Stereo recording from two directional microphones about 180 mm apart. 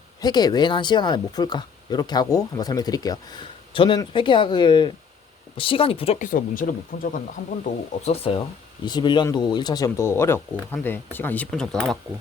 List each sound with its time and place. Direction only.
0.2 s speech: 20° left (ahead or behind)
6.1 s speech: 50° left (ahead or behind)
7.6 s speech: 35° left (ahead or behind); by 11.9 s 5° left (ahead or behind)